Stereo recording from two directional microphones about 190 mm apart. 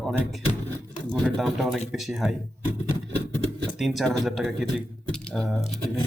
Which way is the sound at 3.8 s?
Centre (ahead or behind).